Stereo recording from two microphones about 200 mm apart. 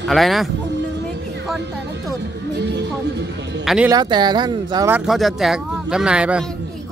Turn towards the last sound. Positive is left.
turn(degrees=-5)  # may be behind; listen again after turning